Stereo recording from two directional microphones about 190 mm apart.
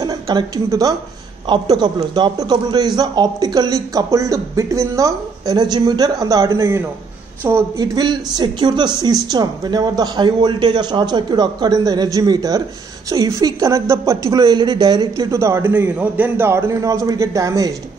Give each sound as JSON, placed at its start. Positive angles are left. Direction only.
{"t": 0.0, "sound": "a woman's voice", "side_deg": -20}